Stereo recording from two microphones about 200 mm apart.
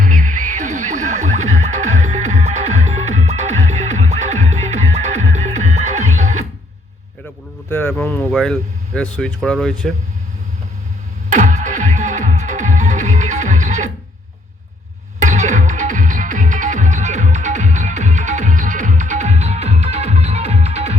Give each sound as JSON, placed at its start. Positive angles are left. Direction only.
{"t": 0.0, "sound": "music", "side_deg": -40}
{"t": 7.7, "sound": "speech", "side_deg": 5}
{"t": 11.3, "sound": "music", "side_deg": -40}
{"t": 15.2, "sound": "music", "side_deg": -35}